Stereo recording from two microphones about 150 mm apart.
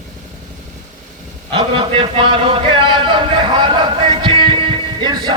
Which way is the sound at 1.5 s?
35° right (ahead or behind).